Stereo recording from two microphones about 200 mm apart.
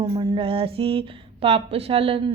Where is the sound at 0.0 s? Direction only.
25° right (ahead or behind).